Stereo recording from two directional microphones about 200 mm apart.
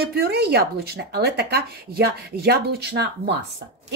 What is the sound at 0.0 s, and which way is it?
Speech, 55° right (ahead or behind).